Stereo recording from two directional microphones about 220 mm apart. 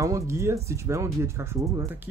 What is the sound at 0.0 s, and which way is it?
Speech, 15° right (ahead or behind).